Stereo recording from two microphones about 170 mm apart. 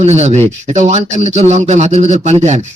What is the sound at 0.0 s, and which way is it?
Speech, 40° right (ahead or behind).